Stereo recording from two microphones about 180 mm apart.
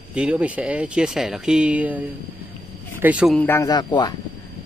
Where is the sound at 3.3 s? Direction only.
10° left (ahead or behind).